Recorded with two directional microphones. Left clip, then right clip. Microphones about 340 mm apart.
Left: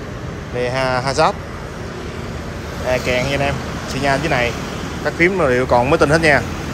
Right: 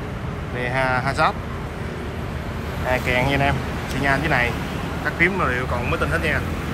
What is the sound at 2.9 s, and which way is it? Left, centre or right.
Speech, centre.